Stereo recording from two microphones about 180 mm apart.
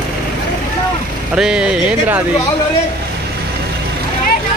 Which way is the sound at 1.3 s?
5° right (ahead or behind).